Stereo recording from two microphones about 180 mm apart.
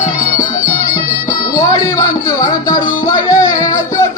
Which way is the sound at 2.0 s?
20° left (ahead or behind).